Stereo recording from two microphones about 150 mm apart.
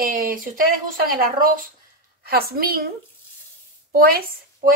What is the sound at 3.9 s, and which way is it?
Speech, 80° right.